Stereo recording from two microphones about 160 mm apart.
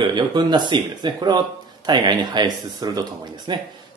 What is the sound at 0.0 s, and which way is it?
Speech, 25° right (ahead or behind).